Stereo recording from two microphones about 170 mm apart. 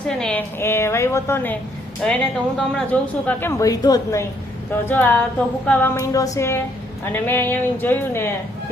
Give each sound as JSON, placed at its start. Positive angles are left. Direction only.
{"t": 0.2, "sound": "a woman's voice", "side_deg": 10}
{"t": 3.6, "sound": "a woman's voice", "side_deg": 20}